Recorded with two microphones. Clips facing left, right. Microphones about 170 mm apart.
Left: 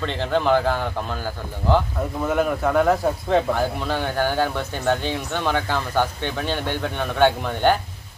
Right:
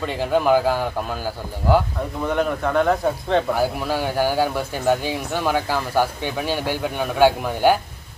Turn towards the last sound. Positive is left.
turn(degrees=-10)  # may be behind; listen again after turning